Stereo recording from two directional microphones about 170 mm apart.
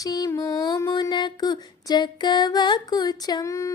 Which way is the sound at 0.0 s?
20° left (ahead or behind).